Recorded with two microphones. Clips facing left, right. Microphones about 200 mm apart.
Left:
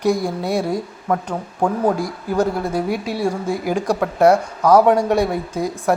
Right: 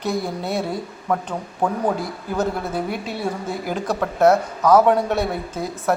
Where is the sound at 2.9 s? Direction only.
10° left (ahead or behind).